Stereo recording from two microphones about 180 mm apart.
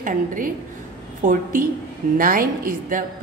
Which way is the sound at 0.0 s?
50° right (ahead or behind).